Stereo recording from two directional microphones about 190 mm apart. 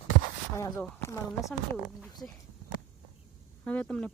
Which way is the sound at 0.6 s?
15° left (ahead or behind).